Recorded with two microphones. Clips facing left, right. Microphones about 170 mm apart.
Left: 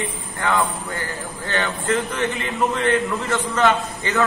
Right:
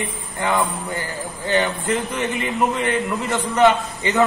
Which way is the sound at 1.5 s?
15° right (ahead or behind).